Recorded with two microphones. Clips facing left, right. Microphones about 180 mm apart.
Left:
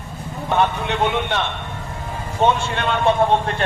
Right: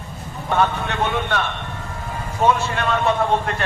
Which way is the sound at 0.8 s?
20° left (ahead or behind).